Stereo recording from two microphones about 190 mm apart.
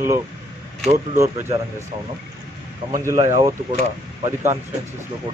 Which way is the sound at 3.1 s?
20° right (ahead or behind).